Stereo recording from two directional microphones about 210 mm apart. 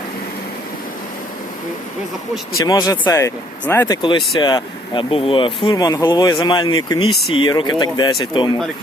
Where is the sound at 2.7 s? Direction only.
20° left (ahead or behind).